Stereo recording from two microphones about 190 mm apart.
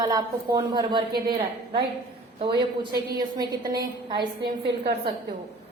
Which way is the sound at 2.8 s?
20° right (ahead or behind).